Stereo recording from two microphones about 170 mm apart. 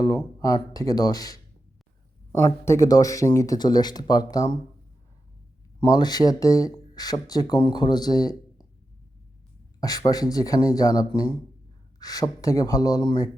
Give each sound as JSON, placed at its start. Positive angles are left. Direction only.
{"t": 0.3, "sound": "speech", "side_deg": 20}
{"t": 5.9, "sound": "speech", "side_deg": 25}
{"t": 9.8, "sound": "speech", "side_deg": 20}